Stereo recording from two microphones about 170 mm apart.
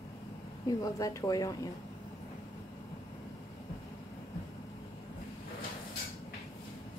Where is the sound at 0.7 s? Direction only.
20° left (ahead or behind).